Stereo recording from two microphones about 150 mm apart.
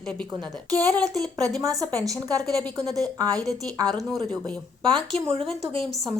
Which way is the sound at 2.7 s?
25° right (ahead or behind).